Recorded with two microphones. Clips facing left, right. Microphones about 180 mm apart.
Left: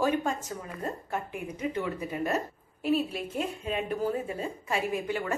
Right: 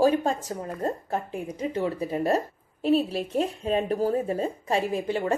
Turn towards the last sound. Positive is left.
turn(degrees=-35)  # may be behind; listen again after turning